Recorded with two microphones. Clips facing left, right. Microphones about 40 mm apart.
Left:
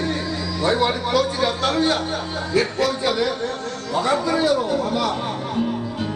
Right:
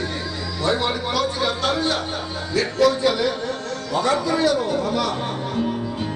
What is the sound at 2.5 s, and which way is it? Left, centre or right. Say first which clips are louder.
Speech: right 1 dB; left.